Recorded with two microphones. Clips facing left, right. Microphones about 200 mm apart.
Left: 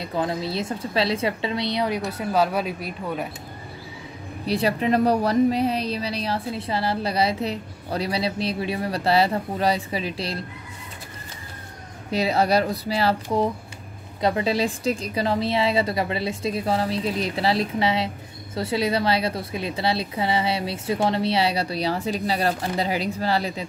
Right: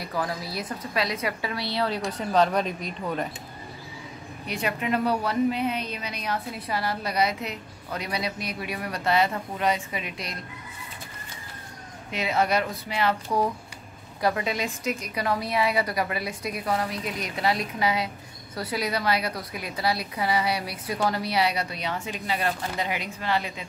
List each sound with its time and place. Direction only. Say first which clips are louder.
0.0 s a woman's voice: left 5 dB; 25° left (ahead or behind); by 3.3 s 5° left (ahead or behind)
4.5 s a woman's voice: left 6 dB; 35° left (ahead or behind)
12.1 s a woman's voice: left 4 dB; 35° left (ahead or behind)